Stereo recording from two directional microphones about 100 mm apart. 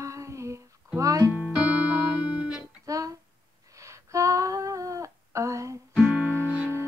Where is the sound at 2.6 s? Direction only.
35° right (ahead or behind).